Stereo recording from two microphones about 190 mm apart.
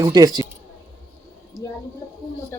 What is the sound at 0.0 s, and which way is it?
Speech, 20° right (ahead or behind).